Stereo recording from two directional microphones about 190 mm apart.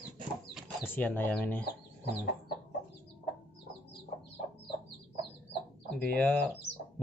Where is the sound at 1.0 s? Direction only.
10° left (ahead or behind).